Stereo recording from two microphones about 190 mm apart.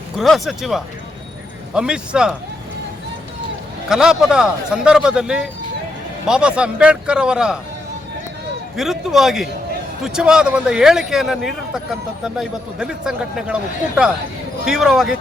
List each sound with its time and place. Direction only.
0.2 s a man's voice: centre (ahead or behind)
3.8 s a man's voice: 5° right (ahead or behind)
8.7 s a man's voice: centre (ahead or behind)